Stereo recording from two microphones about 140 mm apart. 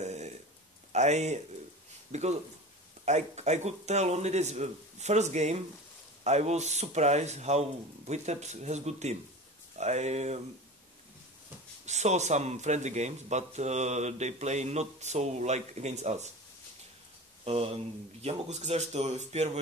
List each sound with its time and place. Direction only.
0.0 s a sound: 55° right (ahead or behind)
0.9 s speech: 55° right (ahead or behind)
11.8 s speech: 55° right (ahead or behind)
18.2 s speech: 50° right (ahead or behind)